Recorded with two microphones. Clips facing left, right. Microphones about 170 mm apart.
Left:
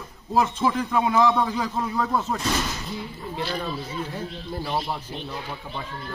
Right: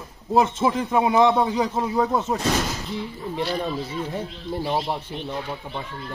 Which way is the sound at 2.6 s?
35° right (ahead or behind).